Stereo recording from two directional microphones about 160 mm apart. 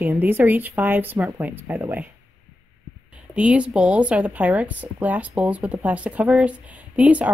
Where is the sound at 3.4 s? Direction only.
5° right (ahead or behind).